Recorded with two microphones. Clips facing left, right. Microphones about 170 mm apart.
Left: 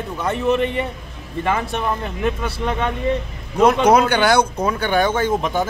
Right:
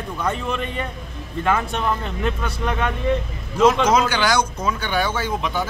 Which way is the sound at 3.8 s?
60° left (ahead or behind).